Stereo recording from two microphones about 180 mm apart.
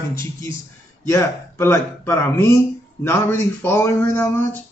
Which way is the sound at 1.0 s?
15° left (ahead or behind).